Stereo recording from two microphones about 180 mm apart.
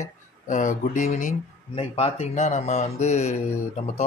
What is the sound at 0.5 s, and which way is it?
Speech, 45° left (ahead or behind).